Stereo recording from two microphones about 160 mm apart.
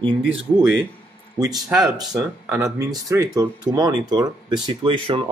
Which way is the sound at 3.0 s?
20° right (ahead or behind).